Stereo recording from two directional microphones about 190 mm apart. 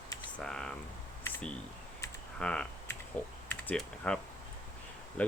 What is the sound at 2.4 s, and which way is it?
Speech, 5° left (ahead or behind).